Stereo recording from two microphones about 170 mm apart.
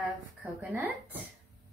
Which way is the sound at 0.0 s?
5° right (ahead or behind).